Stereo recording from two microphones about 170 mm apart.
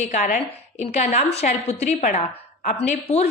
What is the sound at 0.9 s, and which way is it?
A woman's voice, 40° left (ahead or behind).